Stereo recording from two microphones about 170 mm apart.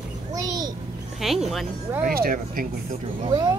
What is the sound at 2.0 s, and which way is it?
Speech, 55° right (ahead or behind).